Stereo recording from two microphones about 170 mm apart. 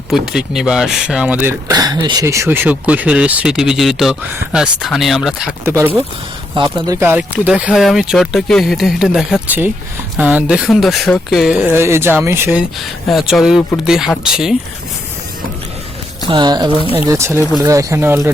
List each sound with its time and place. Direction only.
0.1 s speech: centre (ahead or behind)
1.6 s speech: 20° right (ahead or behind); by 5.5 s centre (ahead or behind)
5.6 s speech: 15° right (ahead or behind)
13.1 s speech: centre (ahead or behind)
16.3 s speech: 25° right (ahead or behind)